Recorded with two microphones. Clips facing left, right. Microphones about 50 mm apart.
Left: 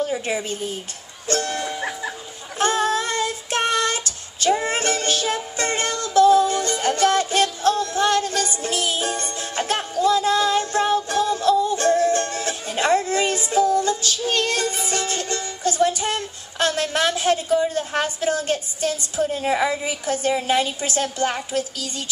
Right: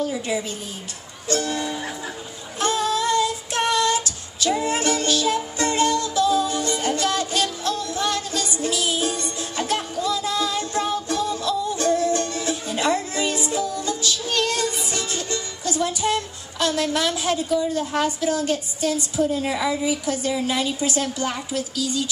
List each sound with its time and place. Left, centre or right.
0.0 s a woman's voice: left
1.2 s speech: left
2.6 s female singing: left
7.6 s music: left